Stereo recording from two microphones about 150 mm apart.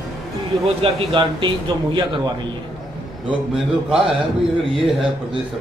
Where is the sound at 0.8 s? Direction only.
35° right (ahead or behind).